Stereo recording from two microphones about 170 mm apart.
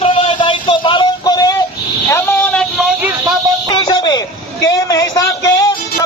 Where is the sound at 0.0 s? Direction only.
30° left (ahead or behind).